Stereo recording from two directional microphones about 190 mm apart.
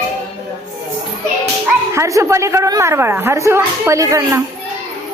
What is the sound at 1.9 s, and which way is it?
A woman's voice, 15° right (ahead or behind).